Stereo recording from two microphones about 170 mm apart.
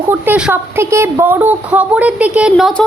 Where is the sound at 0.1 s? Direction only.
10° right (ahead or behind).